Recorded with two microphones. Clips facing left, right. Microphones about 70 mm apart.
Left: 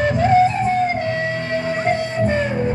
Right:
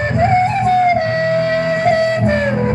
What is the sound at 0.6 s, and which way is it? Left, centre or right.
Music, right.